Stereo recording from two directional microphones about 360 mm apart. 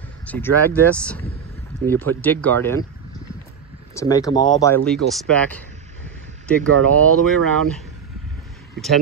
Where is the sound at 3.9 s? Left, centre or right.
Centre.